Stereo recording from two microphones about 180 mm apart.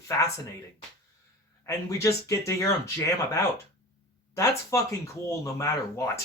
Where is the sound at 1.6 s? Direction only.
15° left (ahead or behind).